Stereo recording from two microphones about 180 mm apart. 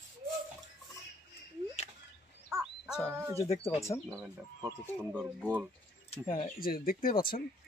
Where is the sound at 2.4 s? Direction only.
5° right (ahead or behind).